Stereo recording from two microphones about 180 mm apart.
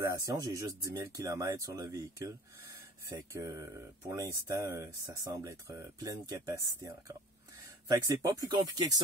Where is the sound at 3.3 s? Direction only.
20° right (ahead or behind).